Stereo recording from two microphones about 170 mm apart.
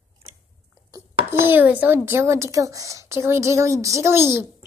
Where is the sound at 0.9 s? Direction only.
15° right (ahead or behind).